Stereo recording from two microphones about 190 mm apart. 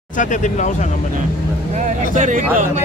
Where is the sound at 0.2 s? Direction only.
40° left (ahead or behind).